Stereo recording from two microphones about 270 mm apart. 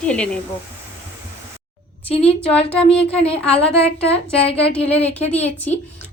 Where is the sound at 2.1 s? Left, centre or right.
Left.